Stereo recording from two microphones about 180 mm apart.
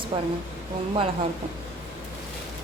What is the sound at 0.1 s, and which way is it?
Speech, 30° right (ahead or behind).